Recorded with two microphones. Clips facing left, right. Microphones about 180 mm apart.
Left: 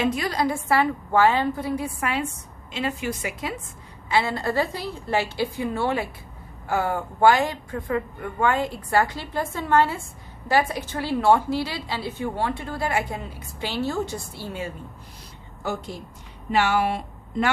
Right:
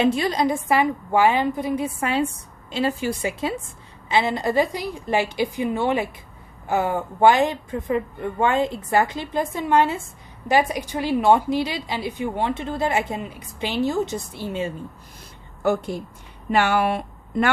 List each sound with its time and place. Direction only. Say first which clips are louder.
0.0 s a woman's voice: right 4 dB; 25° right (ahead or behind)
15.6 s a woman's voice: right 8 dB; 55° right (ahead or behind)